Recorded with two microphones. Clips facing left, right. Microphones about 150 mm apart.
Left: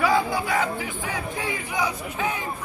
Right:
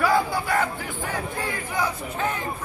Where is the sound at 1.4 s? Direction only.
15° left (ahead or behind).